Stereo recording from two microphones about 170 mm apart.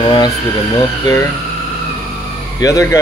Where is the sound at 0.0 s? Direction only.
25° left (ahead or behind).